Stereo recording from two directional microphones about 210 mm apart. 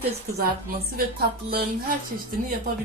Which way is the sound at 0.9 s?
45° right (ahead or behind).